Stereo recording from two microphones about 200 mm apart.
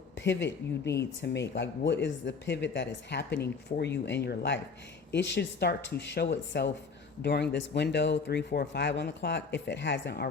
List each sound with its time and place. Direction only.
0.3 s speech: 60° left (ahead or behind)